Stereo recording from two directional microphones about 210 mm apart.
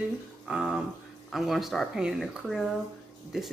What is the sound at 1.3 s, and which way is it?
Speech, centre (ahead or behind).